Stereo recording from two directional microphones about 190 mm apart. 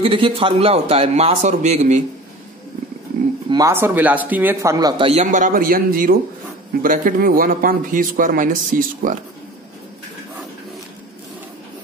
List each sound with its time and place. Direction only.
0.0 s a man's voice: 25° right (ahead or behind)
3.4 s a man's voice: 15° right (ahead or behind); by 9.2 s 45° right (ahead or behind)